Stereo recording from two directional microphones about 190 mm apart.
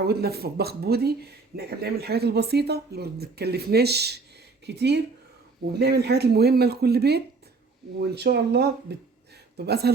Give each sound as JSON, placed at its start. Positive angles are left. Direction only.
{"t": 0.0, "sound": "speech", "side_deg": -55}